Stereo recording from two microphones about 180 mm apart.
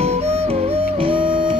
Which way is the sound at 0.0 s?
35° right (ahead or behind).